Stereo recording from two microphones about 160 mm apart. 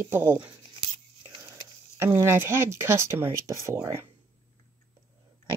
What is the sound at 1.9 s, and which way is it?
Speech, 15° right (ahead or behind).